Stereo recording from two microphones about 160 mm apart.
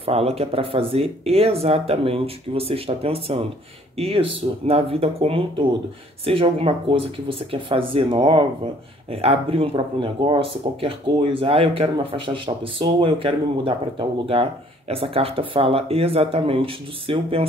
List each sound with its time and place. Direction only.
0.0 s speech: 40° right (ahead or behind)